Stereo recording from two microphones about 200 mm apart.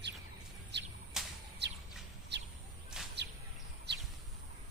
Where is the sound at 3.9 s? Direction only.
60° right (ahead or behind).